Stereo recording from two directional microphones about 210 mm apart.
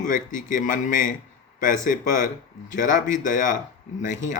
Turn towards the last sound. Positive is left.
turn(degrees=35)  # may be behind; listen again after turning